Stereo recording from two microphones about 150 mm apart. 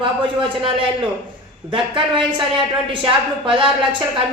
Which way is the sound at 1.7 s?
35° right (ahead or behind).